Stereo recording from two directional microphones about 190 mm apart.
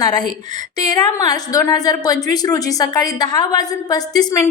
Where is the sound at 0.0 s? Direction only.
20° left (ahead or behind).